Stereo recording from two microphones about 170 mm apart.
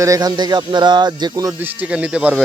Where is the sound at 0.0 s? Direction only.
20° right (ahead or behind).